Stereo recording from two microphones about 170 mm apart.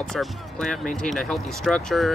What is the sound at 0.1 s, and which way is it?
Speech, 5° left (ahead or behind).